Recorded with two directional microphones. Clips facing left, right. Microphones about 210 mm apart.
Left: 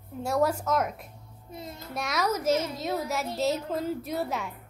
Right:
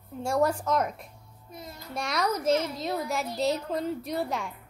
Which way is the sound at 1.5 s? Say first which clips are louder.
Left 3 dB; 25° left (ahead or behind).